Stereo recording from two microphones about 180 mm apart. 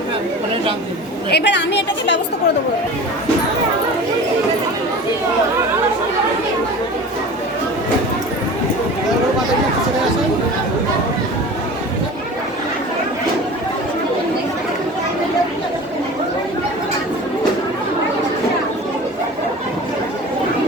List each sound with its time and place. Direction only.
1.3 s a woman's voice: 70° left (ahead or behind)